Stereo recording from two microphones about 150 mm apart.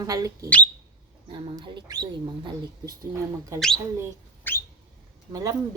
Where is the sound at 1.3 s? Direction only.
30° right (ahead or behind).